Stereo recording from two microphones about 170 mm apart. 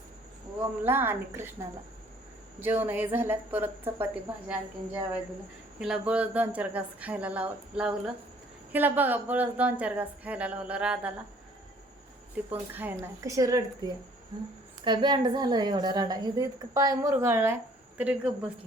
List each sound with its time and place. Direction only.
0.9 s speech: 15° right (ahead or behind)
2.6 s speech: 10° right (ahead or behind)
5.8 s speech: 5° right (ahead or behind)
12.5 s a woman's voice: 10° right (ahead or behind)